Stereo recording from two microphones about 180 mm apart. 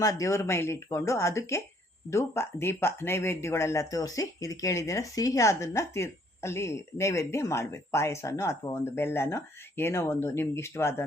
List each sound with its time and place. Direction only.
0.0 s speech: 20° left (ahead or behind)